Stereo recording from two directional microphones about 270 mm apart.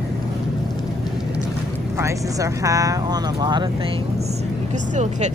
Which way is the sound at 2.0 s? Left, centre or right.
Centre.